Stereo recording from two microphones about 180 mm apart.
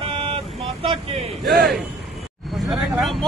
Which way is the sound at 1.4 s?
Centre (ahead or behind).